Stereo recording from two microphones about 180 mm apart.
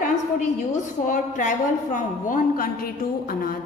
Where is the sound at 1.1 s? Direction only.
45° left (ahead or behind).